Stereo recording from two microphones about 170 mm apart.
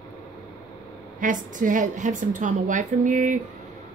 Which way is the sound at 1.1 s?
50° right (ahead or behind).